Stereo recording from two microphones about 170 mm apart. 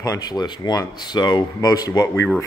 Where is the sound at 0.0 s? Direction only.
20° left (ahead or behind).